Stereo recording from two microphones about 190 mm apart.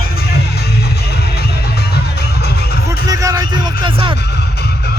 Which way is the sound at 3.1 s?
20° right (ahead or behind).